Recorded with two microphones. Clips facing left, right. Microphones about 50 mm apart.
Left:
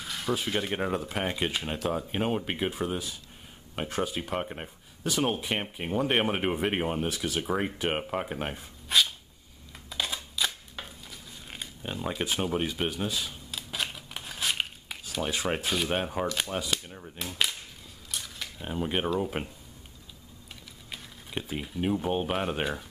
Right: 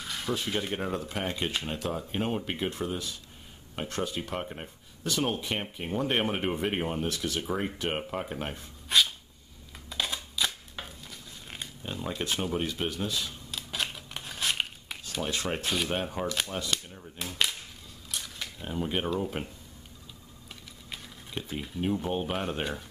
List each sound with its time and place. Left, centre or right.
0.0 s speech: centre
9.8 s scissors: centre
11.8 s camera: centre
15.9 s speech: centre
18.1 s camera: centre
18.6 s speech: centre
20.9 s speech: centre